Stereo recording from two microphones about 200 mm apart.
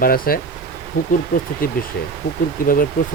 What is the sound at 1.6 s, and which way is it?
Speech, 45° left (ahead or behind).